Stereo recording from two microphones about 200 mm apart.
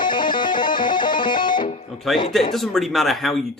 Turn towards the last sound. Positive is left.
turn(degrees=0)  # may be behind; listen again after turning